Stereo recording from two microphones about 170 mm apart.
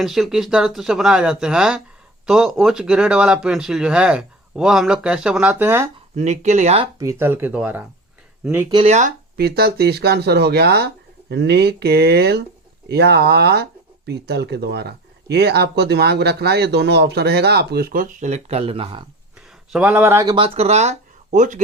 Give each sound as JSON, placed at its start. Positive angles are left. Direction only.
{"t": 0.0, "sound": "speech", "side_deg": 0}
{"t": 6.1, "sound": "speech", "side_deg": -45}
{"t": 7.0, "sound": "speech", "side_deg": -15}
{"t": 8.7, "sound": "speech", "side_deg": -40}
{"t": 9.4, "sound": "speech", "side_deg": -70}
{"t": 19.7, "sound": "speech", "side_deg": -10}
{"t": 20.3, "sound": "speech", "side_deg": -35}